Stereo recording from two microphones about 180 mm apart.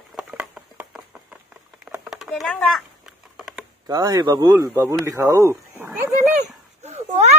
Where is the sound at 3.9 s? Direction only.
20° right (ahead or behind).